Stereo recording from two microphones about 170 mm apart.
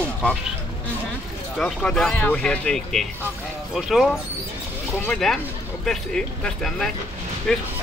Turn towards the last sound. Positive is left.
turn(degrees=5)  # may be behind; listen again after turning